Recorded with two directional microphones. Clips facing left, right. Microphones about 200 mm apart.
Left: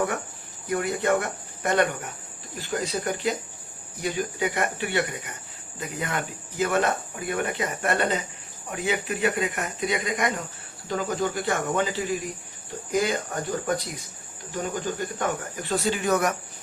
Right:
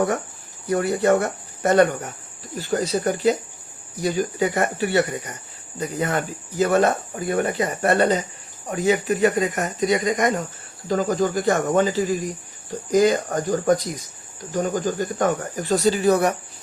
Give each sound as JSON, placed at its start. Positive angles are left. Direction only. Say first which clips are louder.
{"t": 0.7, "sound": "speech", "louder": "right 5 dB", "side_deg": -40}
{"t": 14.5, "sound": "cricket", "louder": "right 6 dB", "side_deg": -45}
{"t": 15.7, "sound": "speech", "louder": "right 6 dB", "side_deg": -40}